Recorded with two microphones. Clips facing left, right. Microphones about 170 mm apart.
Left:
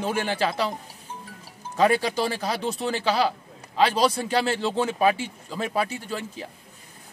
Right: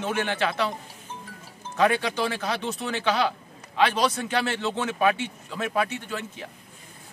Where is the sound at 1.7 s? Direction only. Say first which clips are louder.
Left 2 dB; 35° left (ahead or behind).